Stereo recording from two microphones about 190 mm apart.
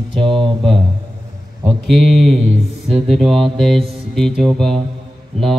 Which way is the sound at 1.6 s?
Centre (ahead or behind).